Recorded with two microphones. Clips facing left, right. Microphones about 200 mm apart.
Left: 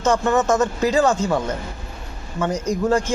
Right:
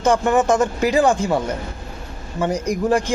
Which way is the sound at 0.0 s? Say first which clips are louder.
Right 2 dB; 15° right (ahead or behind).